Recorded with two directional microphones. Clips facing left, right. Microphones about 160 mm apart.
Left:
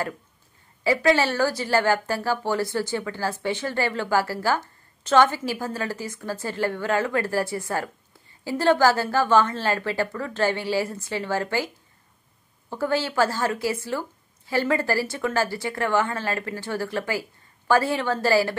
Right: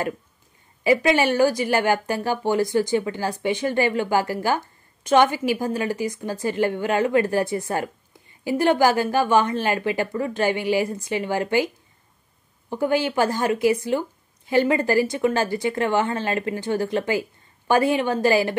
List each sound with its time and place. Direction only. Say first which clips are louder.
0.8 s a woman's voice: right 2 dB; 15° right (ahead or behind)